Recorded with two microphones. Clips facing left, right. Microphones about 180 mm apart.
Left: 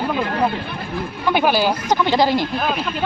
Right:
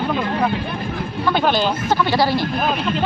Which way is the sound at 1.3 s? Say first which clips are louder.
Left 1 dB; 10° left (ahead or behind).